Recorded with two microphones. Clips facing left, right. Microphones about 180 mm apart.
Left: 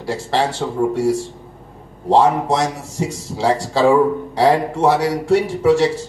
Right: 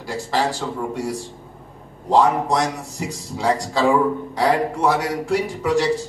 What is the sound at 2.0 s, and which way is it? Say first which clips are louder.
Speech: left 3 dB; 30° left (ahead or behind).